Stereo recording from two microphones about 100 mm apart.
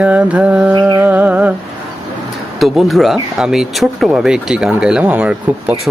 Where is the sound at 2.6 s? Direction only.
Centre (ahead or behind).